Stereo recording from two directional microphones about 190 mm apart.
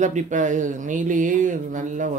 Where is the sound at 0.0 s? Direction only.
40° right (ahead or behind).